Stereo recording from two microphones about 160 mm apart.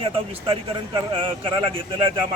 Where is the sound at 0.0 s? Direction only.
35° right (ahead or behind).